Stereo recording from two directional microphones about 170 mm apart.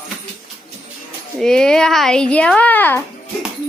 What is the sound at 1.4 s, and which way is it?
A child's voice, 5° left (ahead or behind).